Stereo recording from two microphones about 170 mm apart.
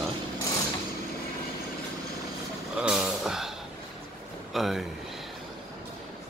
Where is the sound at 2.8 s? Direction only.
5° right (ahead or behind).